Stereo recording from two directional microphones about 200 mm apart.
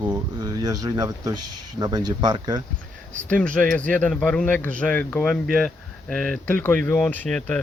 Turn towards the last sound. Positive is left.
turn(degrees=5)  # may be behind; listen again after turning